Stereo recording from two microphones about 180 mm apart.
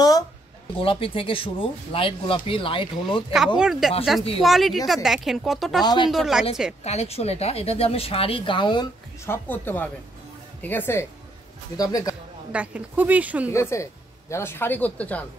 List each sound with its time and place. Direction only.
0.7 s speech: 30° left (ahead or behind)
3.5 s speech: 5° right (ahead or behind)
6.8 s speech: 35° left (ahead or behind)
9.2 s speech: 10° left (ahead or behind)
12.5 s speech: 10° right (ahead or behind)
13.5 s speech: 15° left (ahead or behind)